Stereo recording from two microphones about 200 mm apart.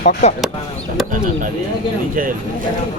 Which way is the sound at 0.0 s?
35° left (ahead or behind).